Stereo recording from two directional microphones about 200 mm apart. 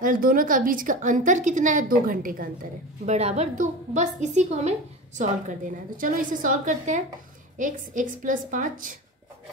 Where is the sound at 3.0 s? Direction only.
35° right (ahead or behind).